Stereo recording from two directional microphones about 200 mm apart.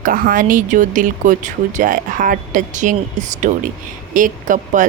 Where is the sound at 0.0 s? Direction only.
45° right (ahead or behind).